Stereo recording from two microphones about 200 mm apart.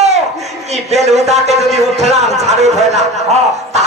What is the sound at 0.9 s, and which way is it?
A man's voice, 35° right (ahead or behind).